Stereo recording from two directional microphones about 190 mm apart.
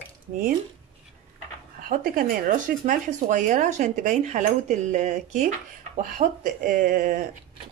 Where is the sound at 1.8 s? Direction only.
50° right (ahead or behind).